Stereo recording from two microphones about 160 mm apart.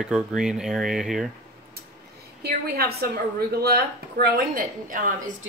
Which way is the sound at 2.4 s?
80° right.